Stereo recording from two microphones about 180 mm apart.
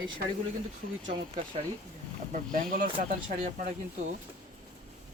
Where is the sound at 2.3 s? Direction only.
50° right (ahead or behind).